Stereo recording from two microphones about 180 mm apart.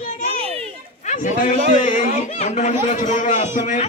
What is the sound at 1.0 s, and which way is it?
A child's voice, 45° left (ahead or behind).